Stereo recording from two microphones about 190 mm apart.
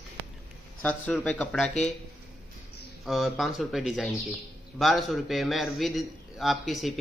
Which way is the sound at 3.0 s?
Centre (ahead or behind).